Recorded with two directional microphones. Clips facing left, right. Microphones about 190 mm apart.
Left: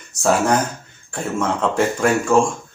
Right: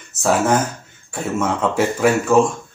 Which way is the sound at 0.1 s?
Centre (ahead or behind).